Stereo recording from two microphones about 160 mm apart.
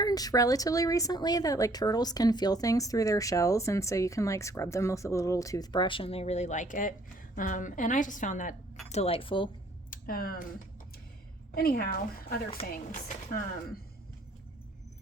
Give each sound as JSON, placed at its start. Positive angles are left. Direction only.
{"t": 0.0, "sound": "a woman's voice", "side_deg": 25}
{"t": 8.9, "sound": "speech", "side_deg": 40}
{"t": 9.9, "sound": "speech", "side_deg": 65}
{"t": 11.5, "sound": "speech", "side_deg": 70}